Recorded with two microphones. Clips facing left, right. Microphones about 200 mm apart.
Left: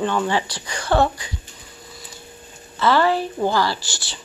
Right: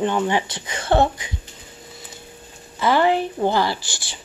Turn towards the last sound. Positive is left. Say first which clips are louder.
# left 1 dB
turn(degrees=-55)  # may be behind; listen again after turning